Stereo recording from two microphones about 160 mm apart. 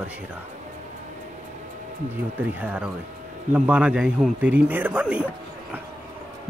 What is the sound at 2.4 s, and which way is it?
A man's voice, 10° right (ahead or behind).